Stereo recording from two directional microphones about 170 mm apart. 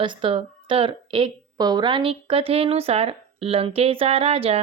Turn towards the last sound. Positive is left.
turn(degrees=-35)  # may be behind; listen again after turning